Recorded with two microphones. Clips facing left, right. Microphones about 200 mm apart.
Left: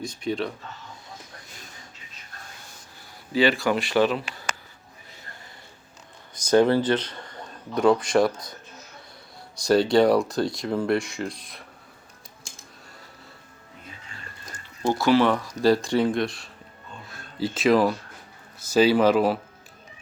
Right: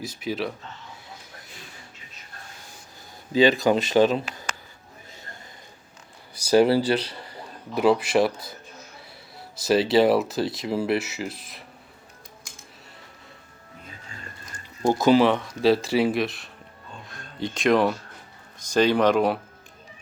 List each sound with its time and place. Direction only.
0.0 s speech: 5° right (ahead or behind)
3.3 s speech: 20° right (ahead or behind)
6.3 s speech: 10° right (ahead or behind)
9.6 s speech: 5° right (ahead or behind)
14.8 s speech: 15° right (ahead or behind)
15.3 s speech: centre (ahead or behind)
17.1 s a sound: 5° left (ahead or behind)
18.6 s speech: 5° left (ahead or behind)